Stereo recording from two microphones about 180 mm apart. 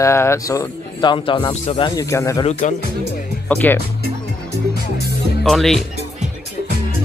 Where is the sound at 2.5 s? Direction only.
40° left (ahead or behind).